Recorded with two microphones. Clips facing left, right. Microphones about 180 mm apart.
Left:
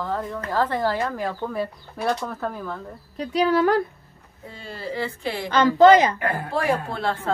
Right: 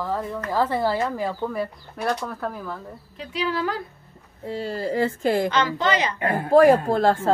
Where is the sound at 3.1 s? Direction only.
45° left (ahead or behind).